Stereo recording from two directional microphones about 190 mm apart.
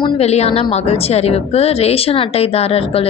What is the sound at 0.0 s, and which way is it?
A woman's voice, 35° left (ahead or behind).